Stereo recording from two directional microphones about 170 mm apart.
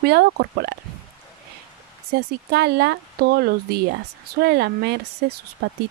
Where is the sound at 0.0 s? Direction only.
75° right (ahead or behind).